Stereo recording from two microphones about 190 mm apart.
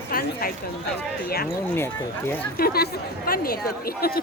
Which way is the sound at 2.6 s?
55° left (ahead or behind).